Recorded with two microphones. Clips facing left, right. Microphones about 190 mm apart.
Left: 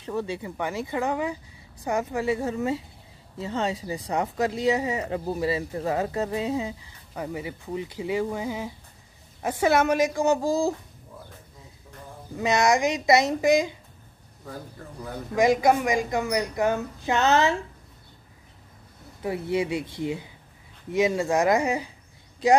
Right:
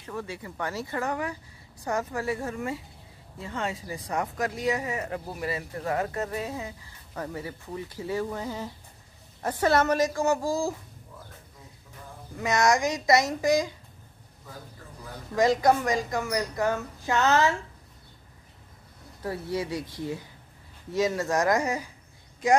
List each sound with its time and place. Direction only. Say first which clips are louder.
0.0 s a woman's voice: left 6 dB; 25° left (ahead or behind)
12.4 s speech: left 2 dB; 15° left (ahead or behind)
15.3 s a woman's voice: left 2 dB; 15° left (ahead or behind)
19.2 s a woman's voice: left 4 dB; 20° left (ahead or behind)